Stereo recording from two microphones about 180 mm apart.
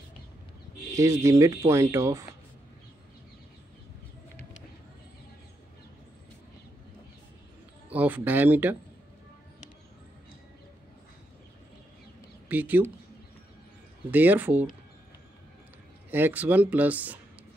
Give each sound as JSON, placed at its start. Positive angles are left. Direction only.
{"t": 0.9, "sound": "speech", "side_deg": -15}
{"t": 7.9, "sound": "speech", "side_deg": -10}
{"t": 12.4, "sound": "speech", "side_deg": -10}
{"t": 14.1, "sound": "speech", "side_deg": -10}
{"t": 16.1, "sound": "speech", "side_deg": -10}